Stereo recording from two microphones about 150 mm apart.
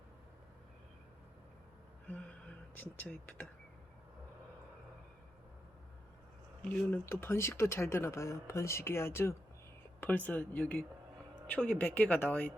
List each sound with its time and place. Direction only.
2.7 s speech: 10° left (ahead or behind)
6.6 s speech: 10° left (ahead or behind)